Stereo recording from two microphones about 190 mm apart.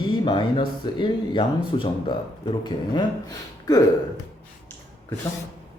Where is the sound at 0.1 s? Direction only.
25° left (ahead or behind).